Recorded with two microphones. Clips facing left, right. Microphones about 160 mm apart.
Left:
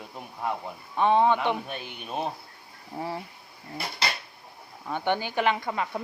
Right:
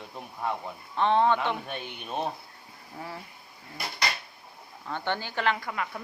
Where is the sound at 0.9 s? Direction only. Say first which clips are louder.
Left 2 dB; 10° left (ahead or behind).